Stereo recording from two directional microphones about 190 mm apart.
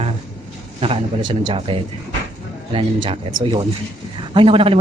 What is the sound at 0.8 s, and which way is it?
Speech, 30° right (ahead or behind).